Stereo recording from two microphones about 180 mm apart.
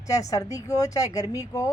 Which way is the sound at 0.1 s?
20° left (ahead or behind).